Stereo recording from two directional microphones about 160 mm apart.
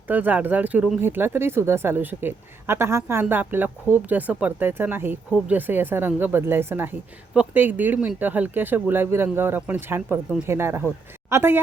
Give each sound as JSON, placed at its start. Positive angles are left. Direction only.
{"t": 0.1, "sound": "speech", "side_deg": -10}